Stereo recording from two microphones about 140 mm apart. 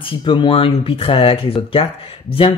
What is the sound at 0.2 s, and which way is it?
Speech, 35° left (ahead or behind).